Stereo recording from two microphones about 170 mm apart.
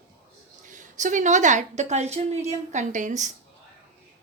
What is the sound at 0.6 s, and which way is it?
A woman's voice, 50° right (ahead or behind).